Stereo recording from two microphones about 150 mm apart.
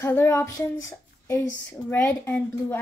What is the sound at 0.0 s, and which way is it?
A woman's voice, 15° left (ahead or behind).